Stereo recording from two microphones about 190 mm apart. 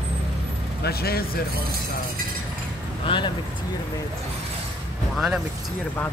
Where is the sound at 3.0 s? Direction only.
25° left (ahead or behind).